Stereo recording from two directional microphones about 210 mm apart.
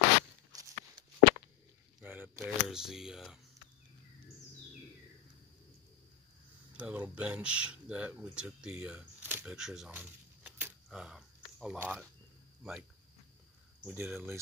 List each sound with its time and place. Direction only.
0.5 s a sound: 20° right (ahead or behind)
2.0 s camera: 10° right (ahead or behind)
6.8 s speech: 5° right (ahead or behind)
13.8 s speech: 5° right (ahead or behind)